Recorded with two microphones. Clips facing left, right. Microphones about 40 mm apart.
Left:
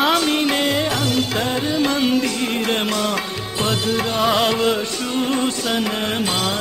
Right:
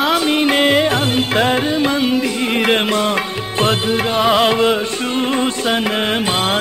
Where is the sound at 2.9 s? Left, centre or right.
Right.